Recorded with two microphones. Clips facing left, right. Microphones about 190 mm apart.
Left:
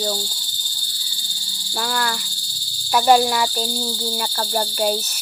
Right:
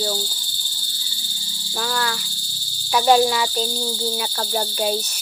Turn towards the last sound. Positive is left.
turn(degrees=0)  # may be behind; listen again after turning